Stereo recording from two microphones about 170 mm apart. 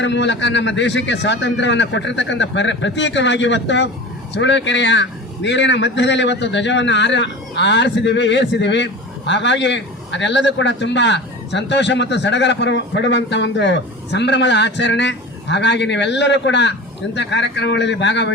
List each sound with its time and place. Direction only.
0.0 s a man's voice: 90° left